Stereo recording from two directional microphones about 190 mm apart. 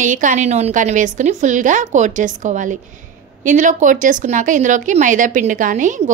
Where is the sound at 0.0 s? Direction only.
40° right (ahead or behind).